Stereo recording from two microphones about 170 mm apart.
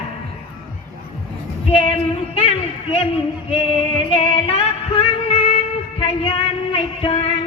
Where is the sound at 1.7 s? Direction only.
30° left (ahead or behind).